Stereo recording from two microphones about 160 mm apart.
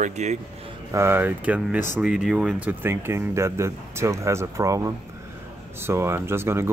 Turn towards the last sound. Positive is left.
turn(degrees=-15)  # may be behind; listen again after turning